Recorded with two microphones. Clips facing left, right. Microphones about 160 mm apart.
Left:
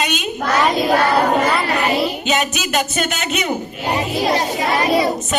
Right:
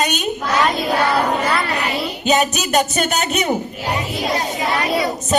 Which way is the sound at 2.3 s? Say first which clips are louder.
Right 3 dB; 40° right (ahead or behind).